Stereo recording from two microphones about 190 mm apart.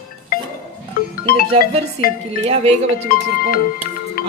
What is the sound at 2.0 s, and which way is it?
Speech, 30° right (ahead or behind).